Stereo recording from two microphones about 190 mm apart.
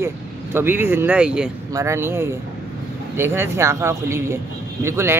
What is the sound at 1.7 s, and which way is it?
Speech, 15° right (ahead or behind).